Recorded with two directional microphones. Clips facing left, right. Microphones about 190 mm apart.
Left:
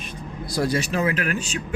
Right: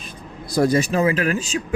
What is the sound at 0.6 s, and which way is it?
Speech, 45° right (ahead or behind).